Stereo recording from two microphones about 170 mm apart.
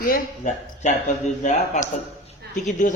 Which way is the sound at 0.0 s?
50° left (ahead or behind).